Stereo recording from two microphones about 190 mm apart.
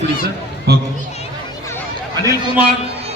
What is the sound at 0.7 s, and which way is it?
Speech, 60° right (ahead or behind).